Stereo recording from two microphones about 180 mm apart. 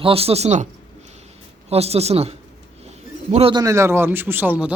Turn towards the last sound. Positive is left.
turn(degrees=-10)  # may be behind; listen again after turning